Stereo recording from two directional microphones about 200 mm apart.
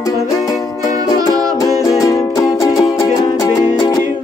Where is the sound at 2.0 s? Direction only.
15° left (ahead or behind).